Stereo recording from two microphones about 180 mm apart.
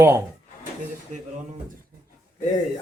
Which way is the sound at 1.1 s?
40° right (ahead or behind).